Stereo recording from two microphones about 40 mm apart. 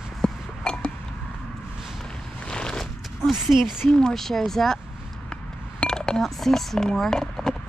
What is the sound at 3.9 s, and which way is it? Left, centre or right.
Speech, centre.